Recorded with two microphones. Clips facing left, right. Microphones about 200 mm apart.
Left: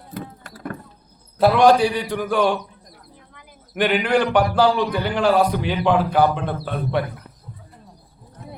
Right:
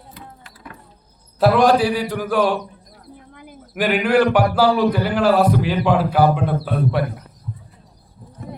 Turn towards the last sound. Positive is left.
turn(degrees=-5)  # may be behind; listen again after turning